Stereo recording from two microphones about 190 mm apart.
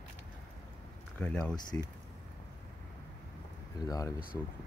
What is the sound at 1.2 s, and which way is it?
Speech, 5° left (ahead or behind).